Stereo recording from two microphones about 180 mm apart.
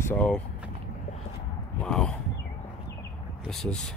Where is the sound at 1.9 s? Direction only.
5° left (ahead or behind).